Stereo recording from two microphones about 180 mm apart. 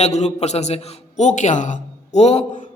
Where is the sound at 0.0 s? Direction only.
40° left (ahead or behind).